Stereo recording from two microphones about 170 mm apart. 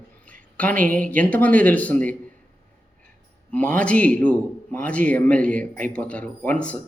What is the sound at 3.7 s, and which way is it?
Speech, 5° left (ahead or behind).